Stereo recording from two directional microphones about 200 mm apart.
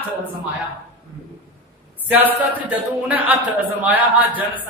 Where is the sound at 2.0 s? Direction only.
10° right (ahead or behind).